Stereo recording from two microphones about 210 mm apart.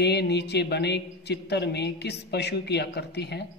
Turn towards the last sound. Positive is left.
turn(degrees=50)  # may be behind; listen again after turning